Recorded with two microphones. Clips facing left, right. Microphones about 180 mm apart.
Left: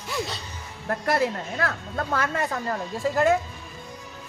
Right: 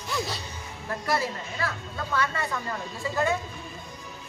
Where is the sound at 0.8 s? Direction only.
60° left (ahead or behind).